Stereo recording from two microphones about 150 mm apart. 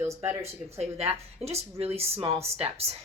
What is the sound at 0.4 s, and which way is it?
Speech, 45° right (ahead or behind).